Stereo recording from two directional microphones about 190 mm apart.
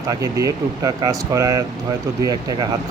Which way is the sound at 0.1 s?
20° right (ahead or behind).